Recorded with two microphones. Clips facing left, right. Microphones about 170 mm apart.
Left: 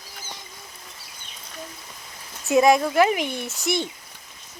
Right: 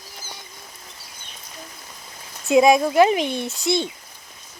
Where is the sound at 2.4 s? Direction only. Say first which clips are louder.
Right 2 dB; 15° right (ahead or behind).